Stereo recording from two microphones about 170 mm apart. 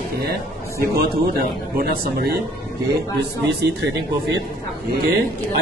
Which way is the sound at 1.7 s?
65° right (ahead or behind).